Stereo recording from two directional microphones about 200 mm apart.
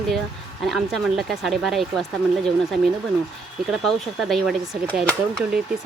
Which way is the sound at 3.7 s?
Centre (ahead or behind).